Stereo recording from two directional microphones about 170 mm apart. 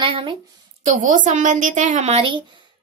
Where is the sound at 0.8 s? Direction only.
45° right (ahead or behind).